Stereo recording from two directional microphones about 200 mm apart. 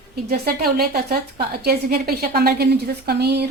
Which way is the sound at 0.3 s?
50° right (ahead or behind).